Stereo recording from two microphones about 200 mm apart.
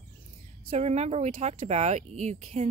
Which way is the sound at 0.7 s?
35° right (ahead or behind).